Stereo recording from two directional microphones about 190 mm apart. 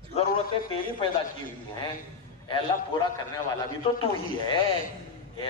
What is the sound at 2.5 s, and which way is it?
A man's voice, 25° left (ahead or behind).